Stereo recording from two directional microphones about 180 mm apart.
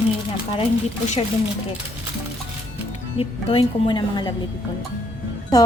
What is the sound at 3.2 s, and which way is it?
A woman's voice, 30° left (ahead or behind).